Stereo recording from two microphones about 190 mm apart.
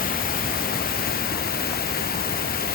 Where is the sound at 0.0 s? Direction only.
50° left (ahead or behind).